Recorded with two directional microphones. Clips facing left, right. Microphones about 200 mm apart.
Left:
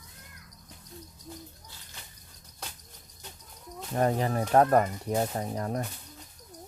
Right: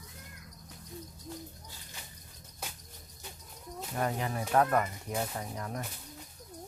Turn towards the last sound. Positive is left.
turn(degrees=35)  # may be behind; listen again after turning